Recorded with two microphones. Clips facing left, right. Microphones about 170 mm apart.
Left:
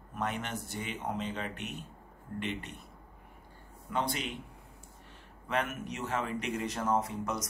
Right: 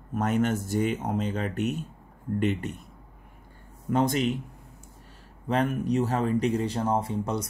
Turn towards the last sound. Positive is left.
turn(degrees=-30)  # may be behind; listen again after turning